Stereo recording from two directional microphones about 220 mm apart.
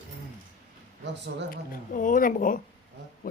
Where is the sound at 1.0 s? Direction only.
50° right (ahead or behind).